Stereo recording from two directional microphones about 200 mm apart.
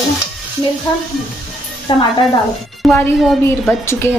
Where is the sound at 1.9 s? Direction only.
25° left (ahead or behind).